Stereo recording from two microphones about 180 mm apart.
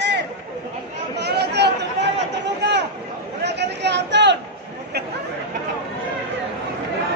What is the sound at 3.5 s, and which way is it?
Chatter, 70° right (ahead or behind).